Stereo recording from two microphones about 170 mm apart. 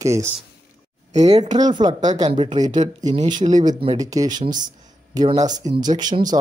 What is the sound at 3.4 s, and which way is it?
Speech, 45° right (ahead or behind).